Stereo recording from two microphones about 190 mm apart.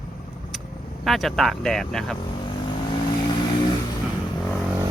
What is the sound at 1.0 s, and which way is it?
Speech, centre (ahead or behind).